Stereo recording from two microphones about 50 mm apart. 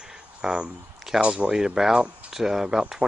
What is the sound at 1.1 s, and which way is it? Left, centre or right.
Speech, centre.